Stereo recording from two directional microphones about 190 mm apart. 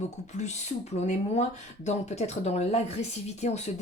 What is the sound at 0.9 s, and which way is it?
Speech, 35° left (ahead or behind).